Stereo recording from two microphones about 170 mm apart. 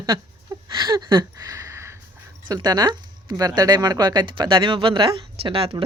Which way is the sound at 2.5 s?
25° right (ahead or behind).